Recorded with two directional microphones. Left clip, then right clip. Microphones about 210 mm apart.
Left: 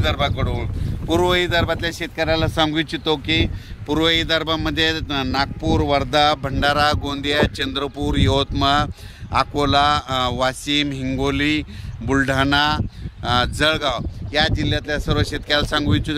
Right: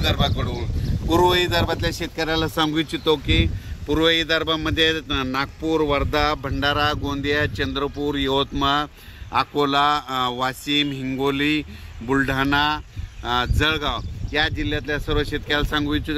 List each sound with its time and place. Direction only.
0.0 s speech: 20° left (ahead or behind); by 16.2 s 55° left (ahead or behind)